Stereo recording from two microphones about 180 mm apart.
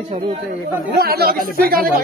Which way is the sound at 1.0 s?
60° right (ahead or behind).